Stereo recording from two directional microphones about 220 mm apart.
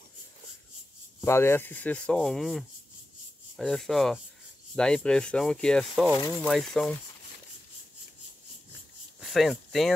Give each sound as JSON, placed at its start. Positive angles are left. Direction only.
{"t": 1.2, "sound": "speech", "side_deg": 10}
{"t": 3.5, "sound": "rub", "side_deg": 0}
{"t": 9.2, "sound": "speech", "side_deg": 0}